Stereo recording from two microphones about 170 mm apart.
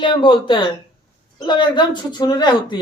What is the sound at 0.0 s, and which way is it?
Speech, 30° left (ahead or behind).